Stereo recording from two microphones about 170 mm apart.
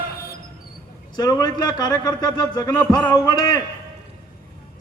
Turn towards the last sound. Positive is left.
turn(degrees=25)  # may be behind; listen again after turning